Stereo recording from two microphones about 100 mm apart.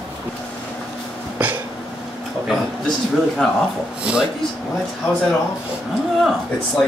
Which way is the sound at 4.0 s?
10° right (ahead or behind).